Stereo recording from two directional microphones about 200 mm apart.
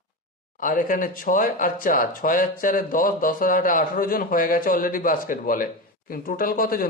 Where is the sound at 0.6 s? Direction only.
45° left (ahead or behind).